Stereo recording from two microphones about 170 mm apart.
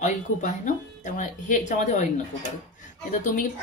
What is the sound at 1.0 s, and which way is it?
Speech, 50° left (ahead or behind).